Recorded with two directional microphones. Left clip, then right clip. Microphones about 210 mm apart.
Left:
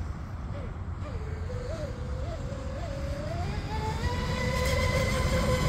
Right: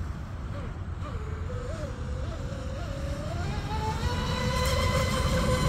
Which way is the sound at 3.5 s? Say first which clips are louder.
Right 2 dB; 20° right (ahead or behind).